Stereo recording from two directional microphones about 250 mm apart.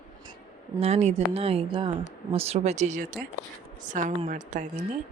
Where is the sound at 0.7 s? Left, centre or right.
Right.